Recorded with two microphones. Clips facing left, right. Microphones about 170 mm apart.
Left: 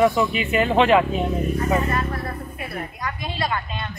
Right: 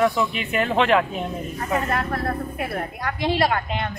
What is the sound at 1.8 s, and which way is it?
Speech, 65° right (ahead or behind).